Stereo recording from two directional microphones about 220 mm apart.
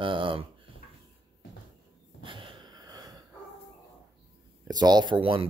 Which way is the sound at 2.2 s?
20° right (ahead or behind).